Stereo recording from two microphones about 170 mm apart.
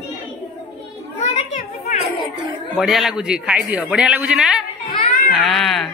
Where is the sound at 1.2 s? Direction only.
40° left (ahead or behind).